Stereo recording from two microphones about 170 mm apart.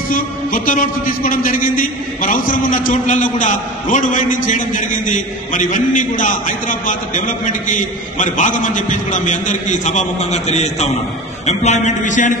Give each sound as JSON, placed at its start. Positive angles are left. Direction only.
{"t": 0.1, "sound": "a man's voice", "side_deg": 55}